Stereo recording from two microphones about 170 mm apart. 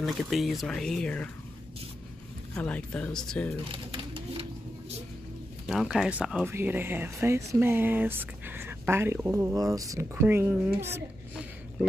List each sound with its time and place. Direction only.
0.0 s speech: centre (ahead or behind)
2.5 s speech: 10° left (ahead or behind)
3.7 s pigeon: 30° right (ahead or behind)
5.7 s speech: centre (ahead or behind)